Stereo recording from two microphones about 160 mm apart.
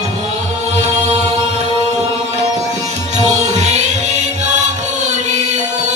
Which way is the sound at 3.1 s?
45° right (ahead or behind).